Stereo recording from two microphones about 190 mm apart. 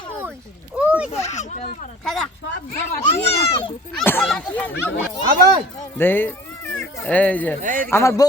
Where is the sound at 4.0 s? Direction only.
10° left (ahead or behind).